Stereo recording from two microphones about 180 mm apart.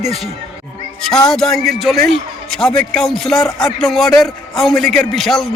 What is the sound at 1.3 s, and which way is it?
A man's voice, centre (ahead or behind).